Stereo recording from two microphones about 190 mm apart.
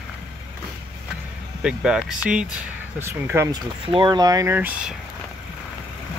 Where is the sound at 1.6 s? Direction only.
5° right (ahead or behind).